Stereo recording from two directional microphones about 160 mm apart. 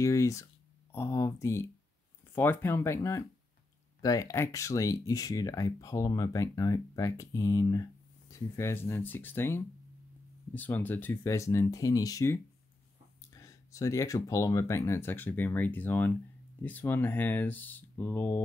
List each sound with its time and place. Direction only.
0.0 s speech: 20° left (ahead or behind)